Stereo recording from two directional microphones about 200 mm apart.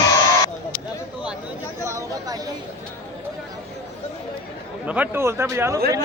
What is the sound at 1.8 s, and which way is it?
Chatter, 15° right (ahead or behind).